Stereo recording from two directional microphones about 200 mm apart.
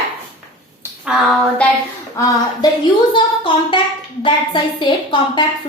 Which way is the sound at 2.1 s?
15° left (ahead or behind).